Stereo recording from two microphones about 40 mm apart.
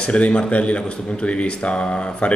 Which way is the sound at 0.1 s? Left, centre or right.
Left.